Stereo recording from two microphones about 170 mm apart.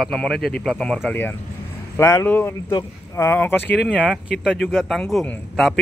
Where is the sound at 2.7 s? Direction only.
25° left (ahead or behind).